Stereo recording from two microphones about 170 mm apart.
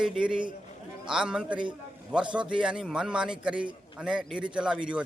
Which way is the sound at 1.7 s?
5° right (ahead or behind).